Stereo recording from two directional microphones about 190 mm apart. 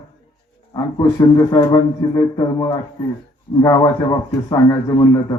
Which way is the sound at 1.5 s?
20° left (ahead or behind).